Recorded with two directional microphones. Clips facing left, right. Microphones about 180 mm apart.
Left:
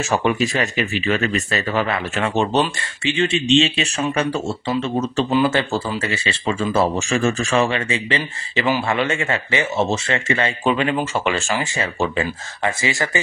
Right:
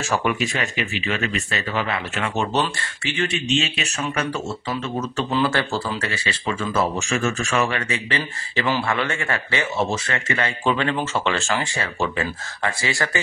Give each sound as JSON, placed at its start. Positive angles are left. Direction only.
{"t": 0.1, "sound": "speech", "side_deg": 30}
{"t": 2.8, "sound": "speech", "side_deg": 25}
{"t": 5.3, "sound": "speech", "side_deg": 20}
{"t": 8.5, "sound": "speech", "side_deg": 15}
{"t": 10.7, "sound": "speech", "side_deg": 15}